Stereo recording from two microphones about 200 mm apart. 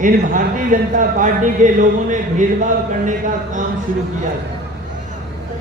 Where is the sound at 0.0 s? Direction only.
40° right (ahead or behind).